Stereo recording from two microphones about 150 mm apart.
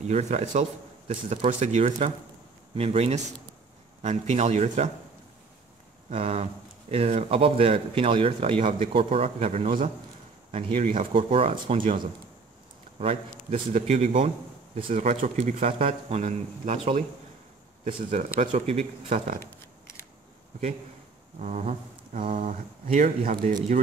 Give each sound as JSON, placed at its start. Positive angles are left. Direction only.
{"t": 0.0, "sound": "a man's voice", "side_deg": -45}
{"t": 6.0, "sound": "speech", "side_deg": -45}
{"t": 18.1, "sound": "speech", "side_deg": -50}
{"t": 21.4, "sound": "speech", "side_deg": -50}